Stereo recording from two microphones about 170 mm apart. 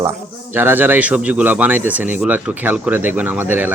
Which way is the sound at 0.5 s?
10° right (ahead or behind).